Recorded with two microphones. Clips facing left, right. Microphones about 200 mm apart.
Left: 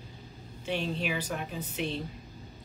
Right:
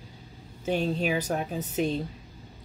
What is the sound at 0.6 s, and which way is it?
A woman's voice, 40° right (ahead or behind).